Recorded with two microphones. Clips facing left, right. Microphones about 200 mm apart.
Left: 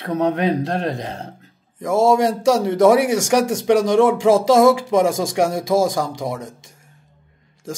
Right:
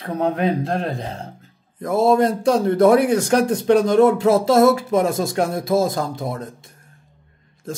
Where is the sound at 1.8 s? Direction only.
90° left.